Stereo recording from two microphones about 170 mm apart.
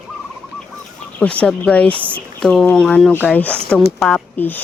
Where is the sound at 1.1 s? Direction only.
5° left (ahead or behind).